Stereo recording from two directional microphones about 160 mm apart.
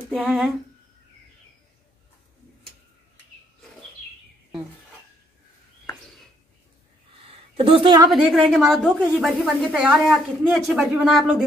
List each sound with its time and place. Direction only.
0.1 s a woman's voice: centre (ahead or behind)
7.2 s a sound: 35° right (ahead or behind)
8.1 s a woman's voice: centre (ahead or behind)